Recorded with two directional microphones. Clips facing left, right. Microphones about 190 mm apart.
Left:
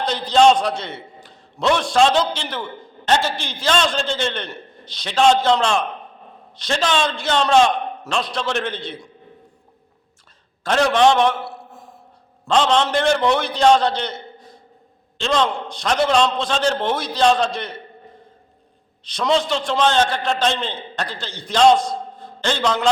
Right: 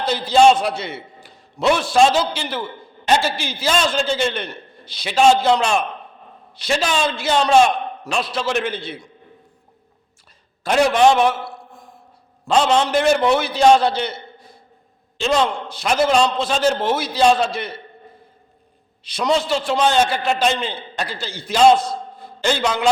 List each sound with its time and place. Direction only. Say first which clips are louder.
0.0 s a man's voice: right 1 dB; 10° right (ahead or behind)
10.6 s a man's voice: right 1 dB; 10° right (ahead or behind)
11.4 s a sound: left 1 dB; 5° left (ahead or behind)
12.5 s a man's voice: right 1 dB; 10° right (ahead or behind)
19.0 s a man's voice: even; 5° right (ahead or behind)